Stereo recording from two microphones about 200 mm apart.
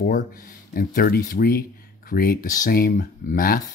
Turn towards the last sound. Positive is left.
turn(degrees=45)  # may be behind; listen again after turning